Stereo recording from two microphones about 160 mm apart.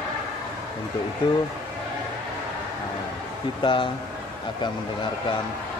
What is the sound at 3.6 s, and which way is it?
Speech, 30° left (ahead or behind).